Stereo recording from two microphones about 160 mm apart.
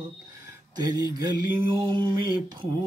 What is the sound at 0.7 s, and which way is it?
Mantra, 25° right (ahead or behind).